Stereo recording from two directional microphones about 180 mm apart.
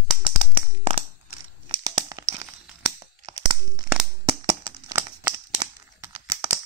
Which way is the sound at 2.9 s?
20° right (ahead or behind).